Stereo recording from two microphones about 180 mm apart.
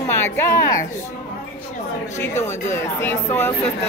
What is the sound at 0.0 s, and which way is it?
Speech, 15° left (ahead or behind).